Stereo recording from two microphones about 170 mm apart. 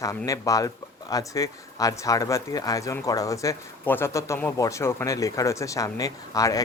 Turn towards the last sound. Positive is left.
turn(degrees=20)  # may be behind; listen again after turning